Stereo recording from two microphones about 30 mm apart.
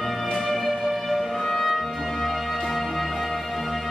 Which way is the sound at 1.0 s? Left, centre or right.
Centre.